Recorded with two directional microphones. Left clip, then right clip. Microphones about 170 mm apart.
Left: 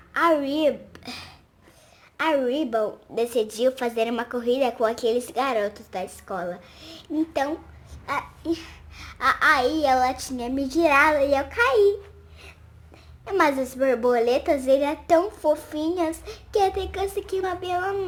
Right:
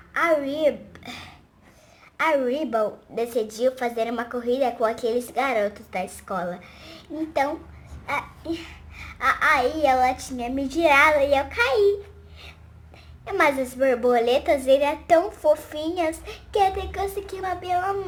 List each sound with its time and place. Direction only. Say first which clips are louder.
0.1 s a woman's voice: left 1 dB; 30° left (ahead or behind)
8.0 s a child's voice: left 1 dB; 30° left (ahead or behind)
13.2 s a woman's voice: even; 30° left (ahead or behind)